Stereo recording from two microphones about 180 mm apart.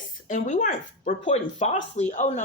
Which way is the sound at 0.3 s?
45° left (ahead or behind).